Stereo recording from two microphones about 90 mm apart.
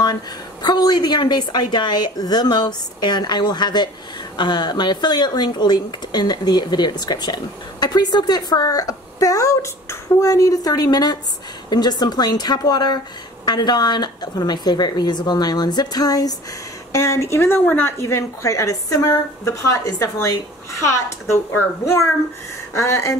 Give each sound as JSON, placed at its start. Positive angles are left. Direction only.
{"t": 0.0, "sound": "a woman's voice", "side_deg": 50}
{"t": 16.9, "sound": "a woman's voice", "side_deg": 35}